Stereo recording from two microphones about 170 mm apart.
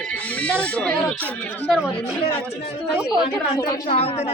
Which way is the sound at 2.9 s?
5° right (ahead or behind).